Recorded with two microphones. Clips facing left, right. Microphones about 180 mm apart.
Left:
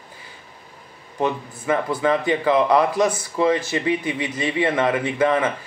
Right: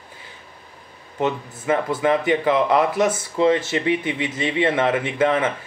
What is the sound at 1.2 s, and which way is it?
Speech, 25° right (ahead or behind).